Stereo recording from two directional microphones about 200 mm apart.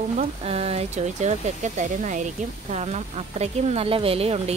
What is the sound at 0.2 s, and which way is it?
Speech, 30° right (ahead or behind).